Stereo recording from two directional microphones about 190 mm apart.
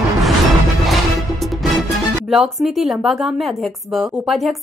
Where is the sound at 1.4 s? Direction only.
Centre (ahead or behind).